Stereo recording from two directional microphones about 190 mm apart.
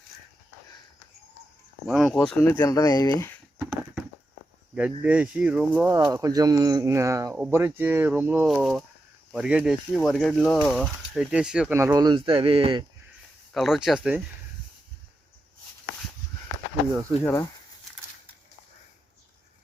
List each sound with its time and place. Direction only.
1.9 s speech: centre (ahead or behind); by 3.3 s 15° left (ahead or behind)
3.6 s a sound: 5° right (ahead or behind)
4.7 s speech: 5° right (ahead or behind); by 12.8 s 30° right (ahead or behind)
13.5 s speech: centre (ahead or behind)